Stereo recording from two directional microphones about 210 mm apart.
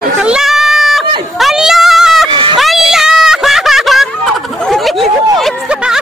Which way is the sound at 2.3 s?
25° right (ahead or behind).